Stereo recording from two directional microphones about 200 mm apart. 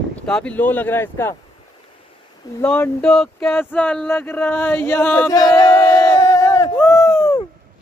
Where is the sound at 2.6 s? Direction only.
10° left (ahead or behind).